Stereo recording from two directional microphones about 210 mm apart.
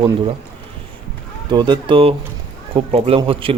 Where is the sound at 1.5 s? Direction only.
20° right (ahead or behind).